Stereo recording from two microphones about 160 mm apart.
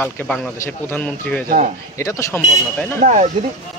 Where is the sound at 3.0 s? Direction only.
50° right (ahead or behind).